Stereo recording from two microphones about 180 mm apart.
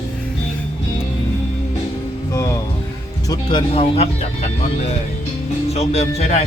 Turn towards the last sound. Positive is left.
turn(degrees=35)  # may be behind; listen again after turning